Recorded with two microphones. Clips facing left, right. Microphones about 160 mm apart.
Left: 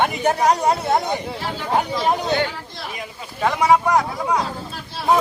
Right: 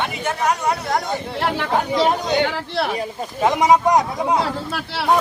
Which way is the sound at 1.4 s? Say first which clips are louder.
Right 6 dB; 65° right (ahead or behind).